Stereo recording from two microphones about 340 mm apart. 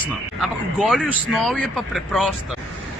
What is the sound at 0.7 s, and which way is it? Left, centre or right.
Speech, centre.